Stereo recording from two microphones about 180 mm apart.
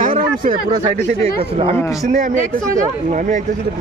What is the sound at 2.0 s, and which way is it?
A man's voice, 40° right (ahead or behind).